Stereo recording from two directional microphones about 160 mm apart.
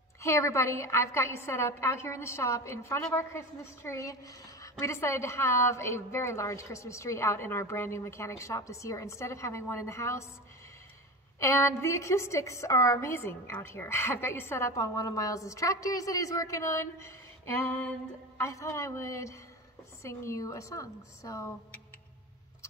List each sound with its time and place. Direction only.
0.2 s a woman's voice: 20° left (ahead or behind)
11.3 s a woman's voice: 15° left (ahead or behind)